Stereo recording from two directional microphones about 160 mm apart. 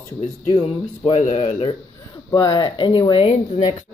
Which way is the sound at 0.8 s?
45° left (ahead or behind).